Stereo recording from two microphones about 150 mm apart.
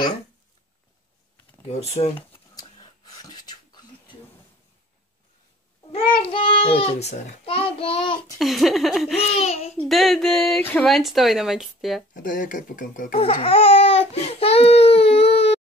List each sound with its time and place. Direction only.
1.7 s speech: 45° left (ahead or behind)
2.5 s a sound: 25° left (ahead or behind)
6.1 s a child's voice: 35° left (ahead or behind)
8.4 s speech: centre (ahead or behind)
9.4 s speech: 45° left (ahead or behind)
9.8 s speech: centre (ahead or behind)
12.1 s speech: 60° left (ahead or behind)
13.2 s speech: 40° left (ahead or behind)